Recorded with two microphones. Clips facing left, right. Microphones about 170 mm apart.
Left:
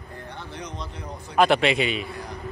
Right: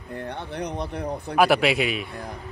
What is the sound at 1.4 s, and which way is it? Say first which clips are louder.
Speech: even; 5° right (ahead or behind).